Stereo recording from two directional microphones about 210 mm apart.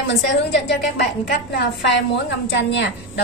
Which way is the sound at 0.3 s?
55° left (ahead or behind).